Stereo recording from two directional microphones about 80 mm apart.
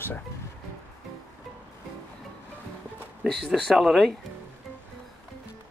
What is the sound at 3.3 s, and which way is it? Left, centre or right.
Speech, centre.